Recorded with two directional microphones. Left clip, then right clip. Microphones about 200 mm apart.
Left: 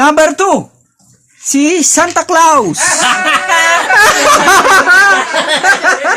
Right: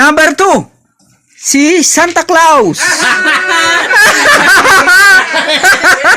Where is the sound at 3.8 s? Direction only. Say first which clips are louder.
Right 1 dB; 5° left (ahead or behind).